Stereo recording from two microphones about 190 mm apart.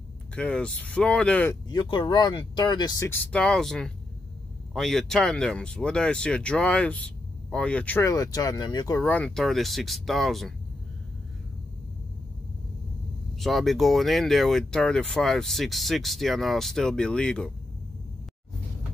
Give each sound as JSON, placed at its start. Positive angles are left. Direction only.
{"t": 0.4, "sound": "speech", "side_deg": 5}
{"t": 1.7, "sound": "speech", "side_deg": 25}
{"t": 3.3, "sound": "speech", "side_deg": 5}
{"t": 13.4, "sound": "speech", "side_deg": 0}